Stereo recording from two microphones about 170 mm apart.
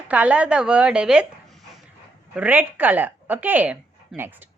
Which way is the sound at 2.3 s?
10° right (ahead or behind).